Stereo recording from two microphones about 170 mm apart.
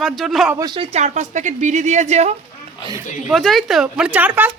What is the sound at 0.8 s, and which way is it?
A woman's voice, 40° right (ahead or behind).